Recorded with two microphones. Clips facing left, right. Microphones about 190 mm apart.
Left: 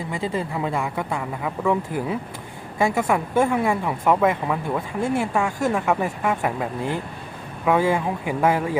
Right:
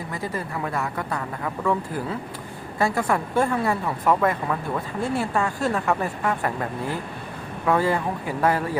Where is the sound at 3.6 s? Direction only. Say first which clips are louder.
Left 2 dB; 10° left (ahead or behind).